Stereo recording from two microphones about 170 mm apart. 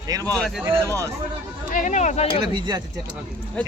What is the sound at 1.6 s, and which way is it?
Speech, 50° left (ahead or behind).